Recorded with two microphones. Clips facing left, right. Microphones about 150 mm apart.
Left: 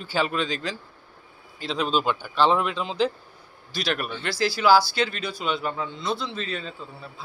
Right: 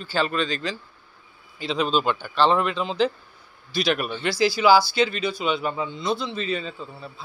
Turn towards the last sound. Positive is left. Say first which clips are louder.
# right 4 dB
turn(degrees=0)  # may be behind; listen again after turning